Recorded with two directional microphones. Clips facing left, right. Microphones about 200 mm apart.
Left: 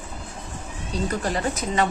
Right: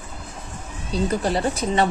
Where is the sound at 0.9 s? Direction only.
30° right (ahead or behind).